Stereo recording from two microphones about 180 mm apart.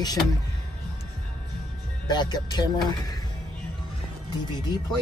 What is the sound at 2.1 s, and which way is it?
Speech, 25° left (ahead or behind).